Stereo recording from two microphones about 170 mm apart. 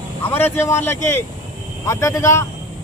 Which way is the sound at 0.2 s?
10° left (ahead or behind).